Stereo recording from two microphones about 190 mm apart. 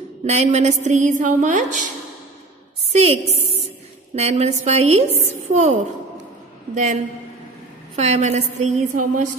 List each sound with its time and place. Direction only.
0.2 s a woman's voice: 35° right (ahead or behind)
2.9 s a woman's voice: 35° right (ahead or behind)
7.9 s a woman's voice: 35° right (ahead or behind)